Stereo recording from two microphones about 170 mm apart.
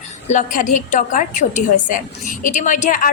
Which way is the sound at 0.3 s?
50° left (ahead or behind).